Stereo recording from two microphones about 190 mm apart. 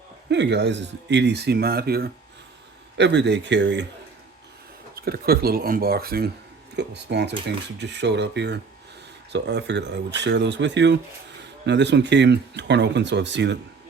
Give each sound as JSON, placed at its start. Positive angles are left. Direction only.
{"t": 0.3, "sound": "speech", "side_deg": -65}
{"t": 3.0, "sound": "speech", "side_deg": -65}
{"t": 4.9, "sound": "speech", "side_deg": -55}